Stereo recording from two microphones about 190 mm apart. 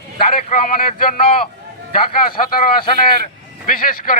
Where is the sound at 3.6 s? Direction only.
45° left (ahead or behind).